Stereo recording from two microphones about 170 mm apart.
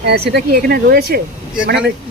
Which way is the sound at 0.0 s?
70° right (ahead or behind).